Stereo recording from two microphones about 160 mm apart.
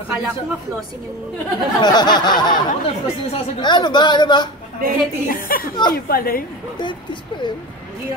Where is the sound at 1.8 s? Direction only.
25° left (ahead or behind).